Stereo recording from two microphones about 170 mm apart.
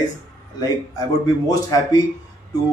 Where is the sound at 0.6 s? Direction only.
20° left (ahead or behind).